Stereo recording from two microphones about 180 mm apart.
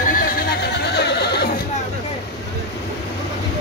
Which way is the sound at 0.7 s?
65° left (ahead or behind).